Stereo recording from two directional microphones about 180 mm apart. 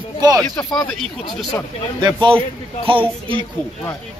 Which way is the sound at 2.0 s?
25° right (ahead or behind).